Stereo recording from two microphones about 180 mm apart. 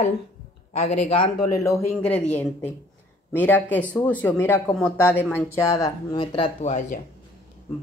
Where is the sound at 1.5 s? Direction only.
15° left (ahead or behind).